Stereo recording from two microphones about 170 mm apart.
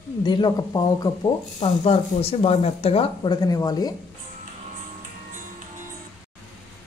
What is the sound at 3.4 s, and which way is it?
Speech, 20° left (ahead or behind).